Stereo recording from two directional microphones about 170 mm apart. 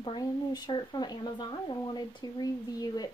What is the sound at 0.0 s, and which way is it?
A woman's voice, 25° left (ahead or behind).